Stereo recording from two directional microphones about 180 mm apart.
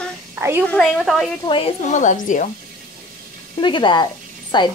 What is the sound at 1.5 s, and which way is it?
Speech, 30° left (ahead or behind).